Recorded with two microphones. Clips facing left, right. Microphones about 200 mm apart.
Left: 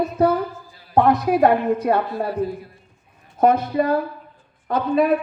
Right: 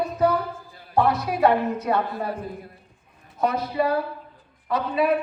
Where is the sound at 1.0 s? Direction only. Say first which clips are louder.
Left 4 dB; 50° left (ahead or behind).